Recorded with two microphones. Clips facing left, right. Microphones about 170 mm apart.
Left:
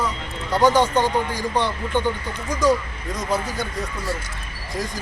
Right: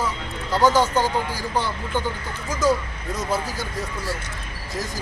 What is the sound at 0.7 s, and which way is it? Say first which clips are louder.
Speech: left 2 dB; 5° right (ahead or behind).